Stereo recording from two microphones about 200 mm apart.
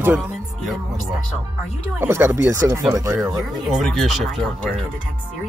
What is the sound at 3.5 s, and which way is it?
Speech, centre (ahead or behind).